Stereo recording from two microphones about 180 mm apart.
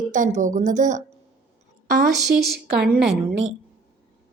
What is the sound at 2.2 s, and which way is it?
Speech, 65° right (ahead or behind).